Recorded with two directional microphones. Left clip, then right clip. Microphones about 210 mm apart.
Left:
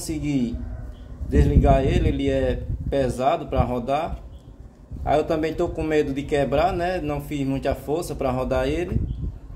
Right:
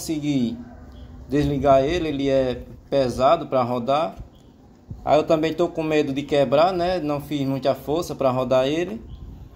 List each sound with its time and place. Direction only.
0.0 s speech: 20° right (ahead or behind)